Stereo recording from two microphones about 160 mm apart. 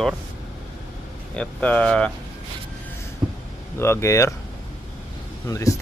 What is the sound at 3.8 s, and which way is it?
Speech, 15° left (ahead or behind).